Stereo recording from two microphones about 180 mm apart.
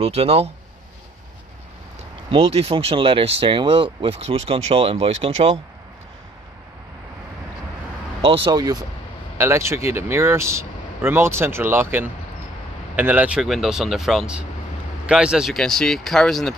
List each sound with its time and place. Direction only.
0.0 s speech: 35° right (ahead or behind)
2.3 s speech: 35° right (ahead or behind)
8.5 s speech: 20° right (ahead or behind); by 16.5 s centre (ahead or behind)